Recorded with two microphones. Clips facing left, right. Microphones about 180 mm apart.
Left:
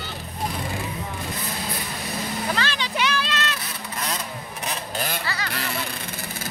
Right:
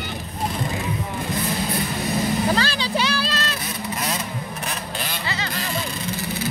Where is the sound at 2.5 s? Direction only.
35° right (ahead or behind).